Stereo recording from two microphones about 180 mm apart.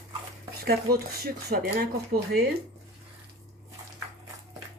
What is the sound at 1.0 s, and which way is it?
Speech, 55° right (ahead or behind).